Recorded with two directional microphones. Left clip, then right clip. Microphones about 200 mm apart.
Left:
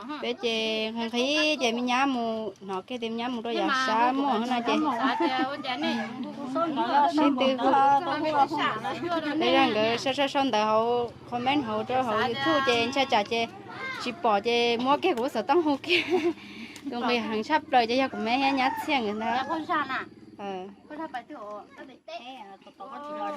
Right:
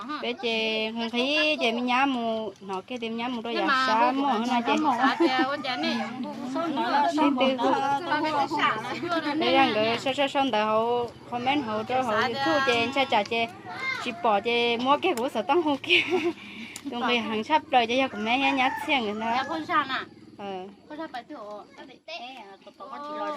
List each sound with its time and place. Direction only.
0.1 s speech: 10° left (ahead or behind)
5.3 s a woman's voice: centre (ahead or behind)
7.2 s speech: 10° left (ahead or behind)
7.7 s speech: 50° left (ahead or behind)
9.0 s speech: 5° left (ahead or behind)